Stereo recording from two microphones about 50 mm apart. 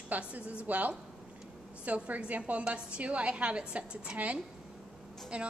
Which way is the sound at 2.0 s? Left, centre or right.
Right.